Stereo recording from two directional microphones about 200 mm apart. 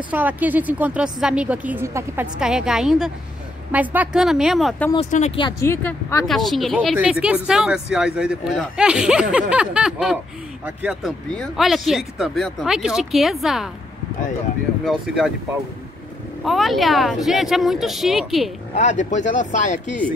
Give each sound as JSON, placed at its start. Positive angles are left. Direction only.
{"t": 0.1, "sound": "a woman's voice", "side_deg": -10}
{"t": 5.1, "sound": "speech", "side_deg": 30}
{"t": 5.6, "sound": "a woman's voice", "side_deg": 10}
{"t": 14.9, "sound": "speech", "side_deg": -5}
{"t": 16.4, "sound": "speech", "side_deg": 0}
{"t": 18.8, "sound": "speech", "side_deg": 35}